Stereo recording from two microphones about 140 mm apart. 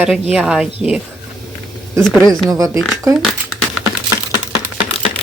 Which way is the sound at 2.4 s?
25° right (ahead or behind).